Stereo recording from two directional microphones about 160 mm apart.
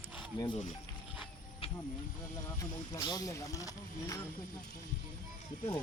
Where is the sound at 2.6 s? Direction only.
25° left (ahead or behind).